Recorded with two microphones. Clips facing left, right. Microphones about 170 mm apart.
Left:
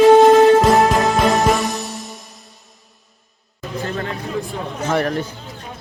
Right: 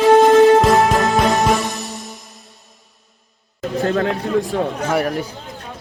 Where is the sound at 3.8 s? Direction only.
65° right (ahead or behind).